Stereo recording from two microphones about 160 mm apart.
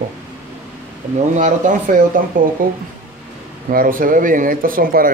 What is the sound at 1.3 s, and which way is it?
Speech, 50° right (ahead or behind).